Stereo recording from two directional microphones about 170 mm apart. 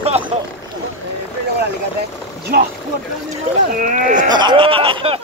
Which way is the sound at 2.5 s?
65° right (ahead or behind).